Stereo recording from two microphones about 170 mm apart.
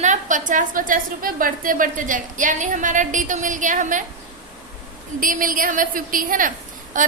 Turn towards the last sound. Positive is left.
turn(degrees=-50)  # may be behind; listen again after turning